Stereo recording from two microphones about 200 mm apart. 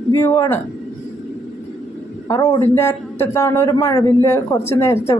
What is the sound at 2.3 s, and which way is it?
A man's voice, 20° left (ahead or behind).